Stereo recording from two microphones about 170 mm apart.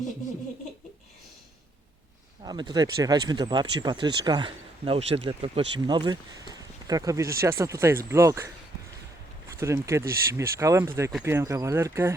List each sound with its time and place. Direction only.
2.4 s speech: 25° right (ahead or behind)
9.6 s speech: 15° right (ahead or behind)